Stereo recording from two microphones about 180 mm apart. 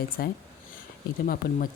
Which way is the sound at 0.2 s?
55° left (ahead or behind).